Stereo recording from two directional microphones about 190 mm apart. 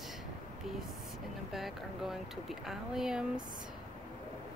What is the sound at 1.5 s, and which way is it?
Speech, centre (ahead or behind).